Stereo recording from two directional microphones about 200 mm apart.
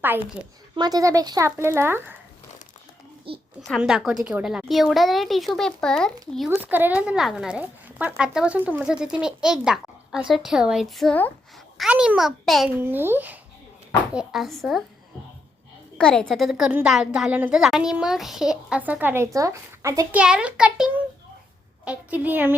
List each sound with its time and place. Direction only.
0.8 s speech: 20° right (ahead or behind)
3.3 s a child's voice: 25° right (ahead or behind)
3.7 s a woman's voice: centre (ahead or behind)
6.5 s a woman's voice: 10° right (ahead or behind)
16.0 s a woman's voice: 5° left (ahead or behind)